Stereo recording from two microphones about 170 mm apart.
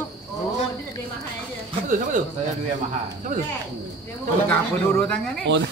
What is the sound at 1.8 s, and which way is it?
Speech, 50° right (ahead or behind).